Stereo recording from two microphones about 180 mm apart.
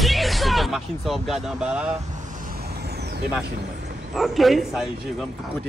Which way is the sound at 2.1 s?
45° right (ahead or behind).